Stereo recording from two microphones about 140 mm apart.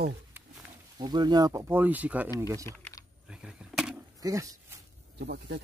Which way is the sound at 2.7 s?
15° left (ahead or behind).